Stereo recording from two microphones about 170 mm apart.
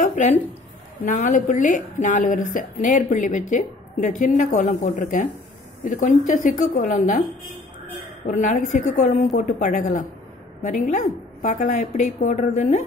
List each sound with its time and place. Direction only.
0.0 s a sound: 45° left (ahead or behind)
1.0 s speech: 50° left (ahead or behind)
8.3 s speech: 45° left (ahead or behind)